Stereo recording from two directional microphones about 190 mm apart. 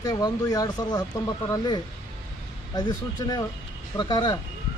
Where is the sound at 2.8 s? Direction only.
20° left (ahead or behind).